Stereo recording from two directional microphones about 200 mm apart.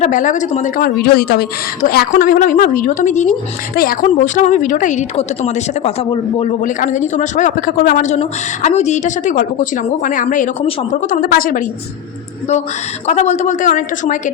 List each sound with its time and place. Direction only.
0.0 s a woman's voice: 40° left (ahead or behind)
13.1 s a woman's voice: 35° left (ahead or behind)